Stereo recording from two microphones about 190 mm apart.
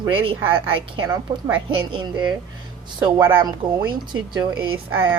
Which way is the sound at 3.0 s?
10° right (ahead or behind).